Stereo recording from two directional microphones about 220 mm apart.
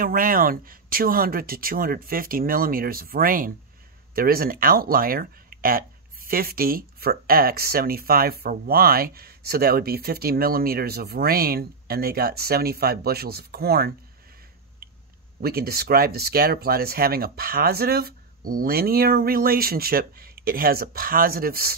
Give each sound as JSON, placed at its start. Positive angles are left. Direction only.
{"t": 0.0, "sound": "speech", "side_deg": -40}
{"t": 15.4, "sound": "speech", "side_deg": -45}